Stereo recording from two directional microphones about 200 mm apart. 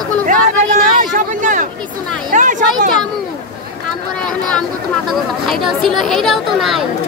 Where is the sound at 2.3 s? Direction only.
40° right (ahead or behind).